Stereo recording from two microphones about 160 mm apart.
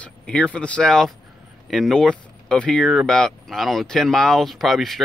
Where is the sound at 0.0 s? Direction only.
5° left (ahead or behind).